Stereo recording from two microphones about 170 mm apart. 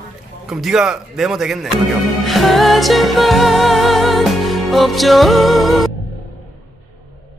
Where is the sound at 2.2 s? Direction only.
Centre (ahead or behind).